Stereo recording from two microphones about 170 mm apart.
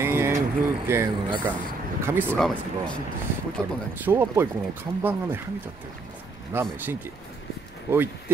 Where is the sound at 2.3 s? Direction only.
5° left (ahead or behind).